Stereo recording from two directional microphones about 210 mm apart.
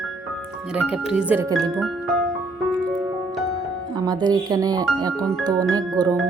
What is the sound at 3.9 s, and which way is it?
Speech, 20° right (ahead or behind).